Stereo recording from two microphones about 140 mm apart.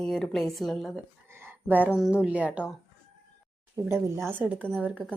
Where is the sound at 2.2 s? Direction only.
10° right (ahead or behind).